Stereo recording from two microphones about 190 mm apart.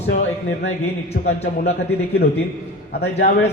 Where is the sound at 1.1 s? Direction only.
60° left (ahead or behind).